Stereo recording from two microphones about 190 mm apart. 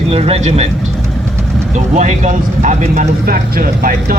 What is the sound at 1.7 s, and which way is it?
Speech, 35° right (ahead or behind).